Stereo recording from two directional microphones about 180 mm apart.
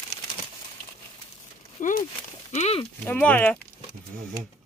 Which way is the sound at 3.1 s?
10° left (ahead or behind).